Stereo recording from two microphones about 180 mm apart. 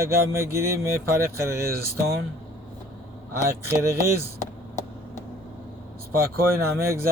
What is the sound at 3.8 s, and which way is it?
Speech, 15° right (ahead or behind).